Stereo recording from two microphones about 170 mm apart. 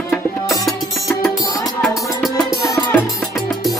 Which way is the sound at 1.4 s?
20° left (ahead or behind).